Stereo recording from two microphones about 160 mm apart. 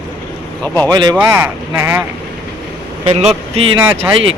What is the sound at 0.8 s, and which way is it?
Speech, 25° right (ahead or behind).